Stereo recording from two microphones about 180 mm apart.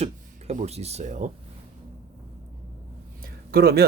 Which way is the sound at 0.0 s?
35° right (ahead or behind).